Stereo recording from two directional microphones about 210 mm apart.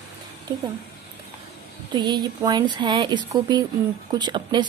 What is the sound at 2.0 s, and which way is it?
A woman's voice, 20° right (ahead or behind).